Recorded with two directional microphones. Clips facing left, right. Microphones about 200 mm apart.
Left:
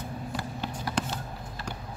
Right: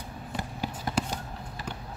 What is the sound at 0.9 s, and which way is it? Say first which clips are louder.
Basketball bounce: right 1 dB; 25° right (ahead or behind).